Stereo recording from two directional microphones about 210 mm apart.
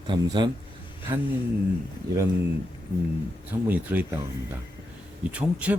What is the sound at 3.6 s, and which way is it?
Speech, 10° right (ahead or behind).